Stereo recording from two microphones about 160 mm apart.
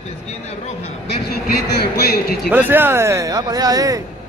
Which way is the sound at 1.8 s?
75° left (ahead or behind).